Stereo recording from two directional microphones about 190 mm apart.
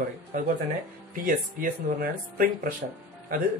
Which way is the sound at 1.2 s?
45° right (ahead or behind).